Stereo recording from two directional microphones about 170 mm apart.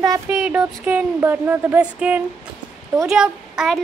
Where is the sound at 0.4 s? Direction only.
5° right (ahead or behind).